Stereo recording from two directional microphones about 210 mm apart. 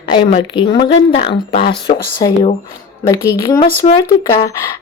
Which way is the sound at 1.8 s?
20° left (ahead or behind).